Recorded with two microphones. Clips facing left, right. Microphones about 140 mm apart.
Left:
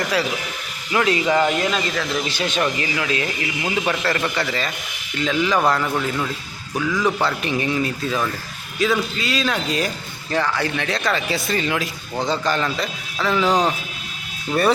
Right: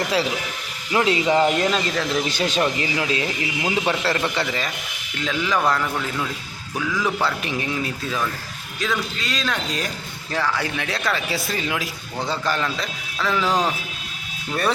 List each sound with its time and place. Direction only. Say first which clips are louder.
0.9 s a man's voice: even; 25° right (ahead or behind)
5.1 s speech: left 3 dB; centre (ahead or behind)